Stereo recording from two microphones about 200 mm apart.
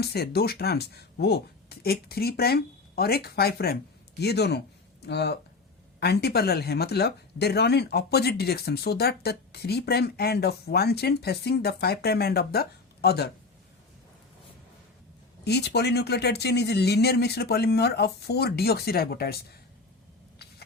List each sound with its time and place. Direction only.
0.0 s speech: 55° left (ahead or behind)
15.4 s speech: 55° left (ahead or behind)